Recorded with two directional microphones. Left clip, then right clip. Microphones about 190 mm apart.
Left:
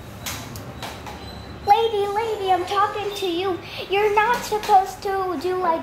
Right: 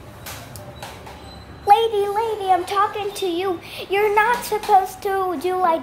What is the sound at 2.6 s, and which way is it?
A woman's voice, 20° right (ahead or behind).